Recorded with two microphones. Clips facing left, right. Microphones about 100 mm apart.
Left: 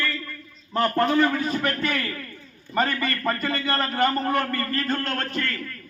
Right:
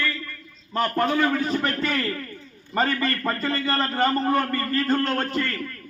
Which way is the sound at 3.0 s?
25° right (ahead or behind).